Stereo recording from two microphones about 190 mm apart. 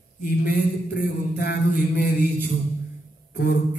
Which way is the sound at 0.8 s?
55° left (ahead or behind).